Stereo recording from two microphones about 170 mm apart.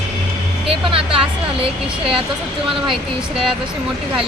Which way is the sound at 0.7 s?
30° right (ahead or behind).